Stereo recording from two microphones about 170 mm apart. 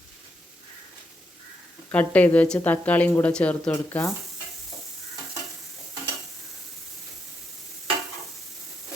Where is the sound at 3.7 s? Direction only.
15° left (ahead or behind).